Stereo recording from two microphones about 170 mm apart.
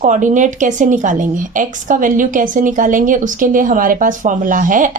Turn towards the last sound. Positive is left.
turn(degrees=-50)  # may be behind; listen again after turning